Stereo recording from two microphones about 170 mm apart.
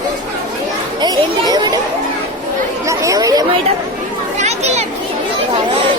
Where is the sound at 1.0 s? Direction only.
25° right (ahead or behind).